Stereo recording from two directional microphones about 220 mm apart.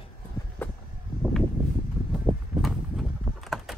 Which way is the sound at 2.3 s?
5° right (ahead or behind).